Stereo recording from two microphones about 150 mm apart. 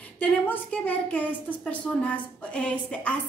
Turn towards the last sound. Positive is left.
turn(degrees=10)  # may be behind; listen again after turning